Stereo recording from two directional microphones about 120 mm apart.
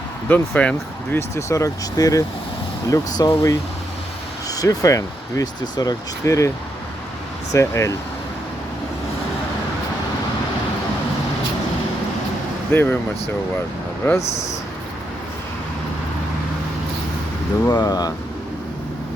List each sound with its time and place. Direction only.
0.3 s speech: 15° left (ahead or behind)
1.4 s speech: 25° left (ahead or behind)
7.5 s speech: 25° left (ahead or behind)
12.7 s speech: 15° left (ahead or behind)
14.0 s speech: 20° left (ahead or behind)
17.7 s speech: 35° left (ahead or behind)